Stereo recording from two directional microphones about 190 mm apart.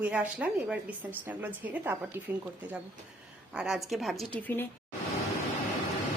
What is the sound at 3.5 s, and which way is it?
A woman's voice, 5° right (ahead or behind).